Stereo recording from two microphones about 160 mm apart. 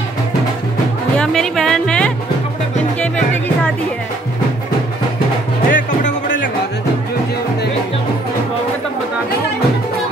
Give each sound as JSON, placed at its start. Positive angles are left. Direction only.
{"t": 1.1, "sound": "music", "side_deg": 5}
{"t": 5.7, "sound": "music", "side_deg": 55}